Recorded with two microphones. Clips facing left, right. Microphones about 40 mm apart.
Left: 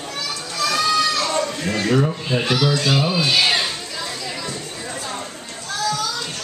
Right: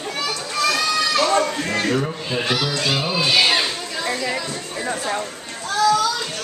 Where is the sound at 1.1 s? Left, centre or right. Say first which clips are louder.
Right 4 dB; right.